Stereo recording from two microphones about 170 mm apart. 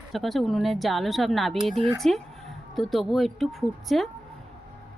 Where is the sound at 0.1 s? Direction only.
Centre (ahead or behind).